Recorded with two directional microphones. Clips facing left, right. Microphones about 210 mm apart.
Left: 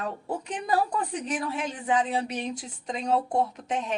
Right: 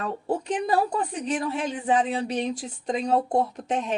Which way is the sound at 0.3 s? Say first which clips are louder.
Right 5 dB; 30° right (ahead or behind).